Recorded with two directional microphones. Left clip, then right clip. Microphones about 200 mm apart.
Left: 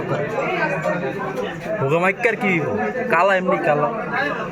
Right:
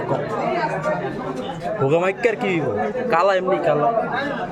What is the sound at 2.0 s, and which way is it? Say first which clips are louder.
Speech: left 1 dB; 45° right (ahead or behind).